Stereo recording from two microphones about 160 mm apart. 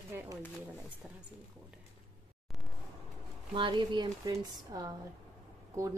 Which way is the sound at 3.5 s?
30° right (ahead or behind).